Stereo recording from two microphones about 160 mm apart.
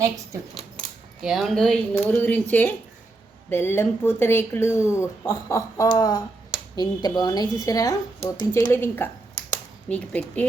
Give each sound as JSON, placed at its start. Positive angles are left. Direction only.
{"t": 1.2, "sound": "speech", "side_deg": 0}